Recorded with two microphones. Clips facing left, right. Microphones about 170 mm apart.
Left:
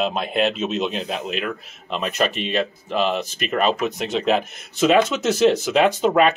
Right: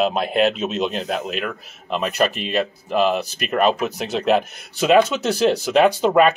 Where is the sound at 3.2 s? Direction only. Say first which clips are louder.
Left 1 dB; 35° right (ahead or behind).